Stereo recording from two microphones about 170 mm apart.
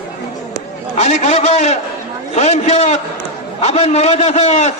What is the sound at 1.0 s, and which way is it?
A man's voice, 40° left (ahead or behind).